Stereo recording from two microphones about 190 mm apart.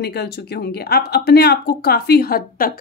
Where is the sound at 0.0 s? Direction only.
60° left (ahead or behind).